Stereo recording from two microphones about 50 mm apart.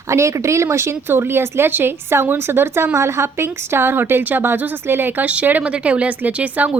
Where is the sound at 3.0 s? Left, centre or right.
Right.